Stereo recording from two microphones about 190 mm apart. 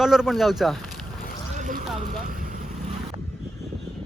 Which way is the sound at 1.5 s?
40° right (ahead or behind).